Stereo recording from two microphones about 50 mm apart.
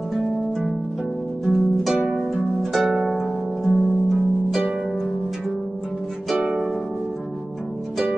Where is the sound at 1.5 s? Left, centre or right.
Centre.